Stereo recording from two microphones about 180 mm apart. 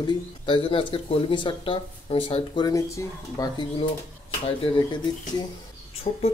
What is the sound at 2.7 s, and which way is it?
Speech, 15° left (ahead or behind).